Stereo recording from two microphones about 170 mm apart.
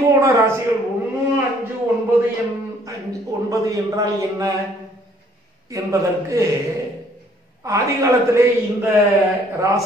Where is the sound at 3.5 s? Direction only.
20° right (ahead or behind).